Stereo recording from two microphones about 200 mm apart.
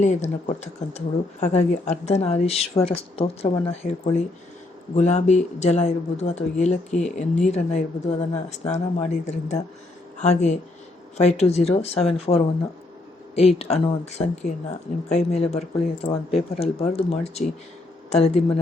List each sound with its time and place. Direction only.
0.0 s speech: 35° left (ahead or behind)